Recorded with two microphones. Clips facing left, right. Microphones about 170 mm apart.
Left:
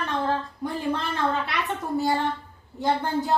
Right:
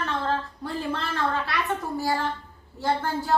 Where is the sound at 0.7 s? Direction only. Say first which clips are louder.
Left 2 dB; 15° left (ahead or behind).